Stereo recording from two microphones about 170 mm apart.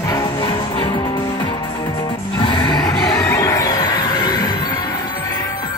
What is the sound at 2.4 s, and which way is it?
Music, 25° left (ahead or behind).